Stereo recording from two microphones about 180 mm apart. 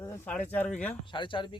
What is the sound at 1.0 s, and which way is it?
Speech, 25° left (ahead or behind).